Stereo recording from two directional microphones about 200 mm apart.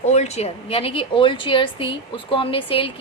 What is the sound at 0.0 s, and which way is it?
A woman's voice, 35° left (ahead or behind).